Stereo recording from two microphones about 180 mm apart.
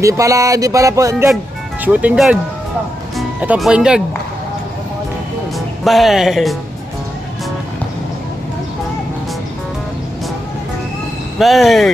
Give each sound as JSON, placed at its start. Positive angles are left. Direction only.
{"t": 0.0, "sound": "speech", "side_deg": -15}
{"t": 1.9, "sound": "speech", "side_deg": -5}
{"t": 5.9, "sound": "speech", "side_deg": 0}
{"t": 11.3, "sound": "speech", "side_deg": 0}